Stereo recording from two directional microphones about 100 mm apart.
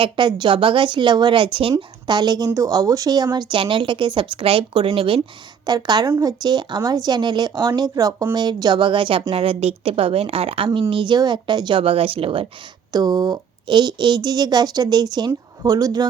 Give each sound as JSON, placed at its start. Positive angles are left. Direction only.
{"t": 0.0, "sound": "speech", "side_deg": -50}
{"t": 2.0, "sound": "speech", "side_deg": -45}
{"t": 3.5, "sound": "speech", "side_deg": -55}
{"t": 5.6, "sound": "speech", "side_deg": -45}
{"t": 8.3, "sound": "speech", "side_deg": -50}
{"t": 9.3, "sound": "a woman's voice", "side_deg": -80}
{"t": 10.8, "sound": "speech", "side_deg": -55}
{"t": 12.9, "sound": "speech", "side_deg": -45}